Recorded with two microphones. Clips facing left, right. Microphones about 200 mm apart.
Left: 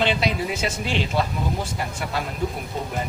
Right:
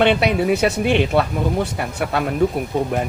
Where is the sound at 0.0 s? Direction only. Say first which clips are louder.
Right 7 dB; 60° right (ahead or behind).